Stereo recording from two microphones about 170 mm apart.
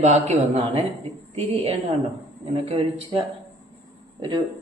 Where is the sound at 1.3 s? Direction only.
35° right (ahead or behind).